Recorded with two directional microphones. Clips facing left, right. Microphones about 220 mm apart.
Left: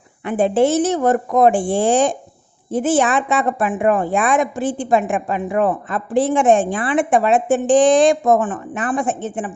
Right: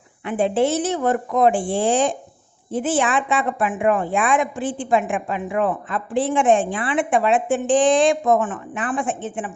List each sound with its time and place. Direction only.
0.3 s a woman's voice: 45° left (ahead or behind)